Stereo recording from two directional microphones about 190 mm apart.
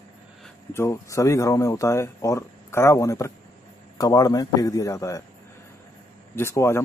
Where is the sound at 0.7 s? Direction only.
15° left (ahead or behind).